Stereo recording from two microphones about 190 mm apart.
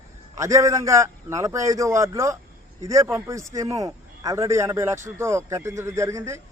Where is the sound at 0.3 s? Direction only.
15° right (ahead or behind).